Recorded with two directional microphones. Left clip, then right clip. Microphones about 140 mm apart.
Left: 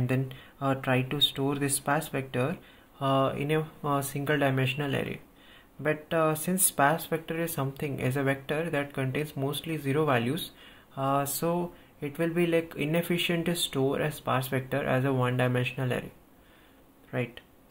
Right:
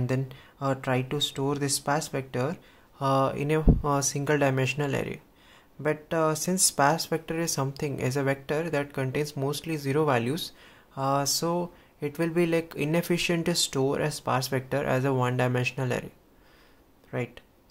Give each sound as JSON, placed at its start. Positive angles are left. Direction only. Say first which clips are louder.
{"t": 0.0, "sound": "speech", "louder": "even", "side_deg": -35}
{"t": 8.0, "sound": "speech", "louder": "right 1 dB", "side_deg": -35}
{"t": 17.1, "sound": "speech", "louder": "even", "side_deg": -40}